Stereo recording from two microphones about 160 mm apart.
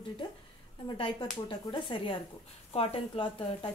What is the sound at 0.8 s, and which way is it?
Speech, 30° left (ahead or behind).